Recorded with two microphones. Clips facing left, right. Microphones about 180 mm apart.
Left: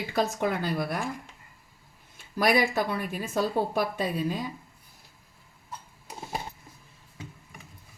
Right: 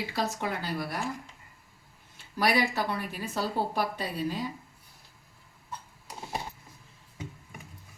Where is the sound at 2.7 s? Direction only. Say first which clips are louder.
Left 3 dB; 50° left (ahead or behind).